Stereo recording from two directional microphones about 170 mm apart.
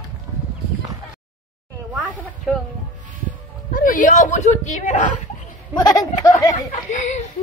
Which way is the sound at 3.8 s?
50° left (ahead or behind).